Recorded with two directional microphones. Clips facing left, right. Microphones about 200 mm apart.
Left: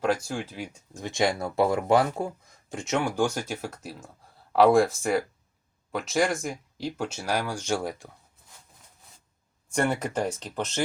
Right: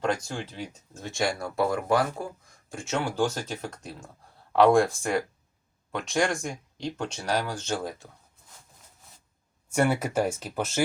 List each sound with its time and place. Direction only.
0.0 s speech: 5° left (ahead or behind)
9.7 s speech: 5° right (ahead or behind)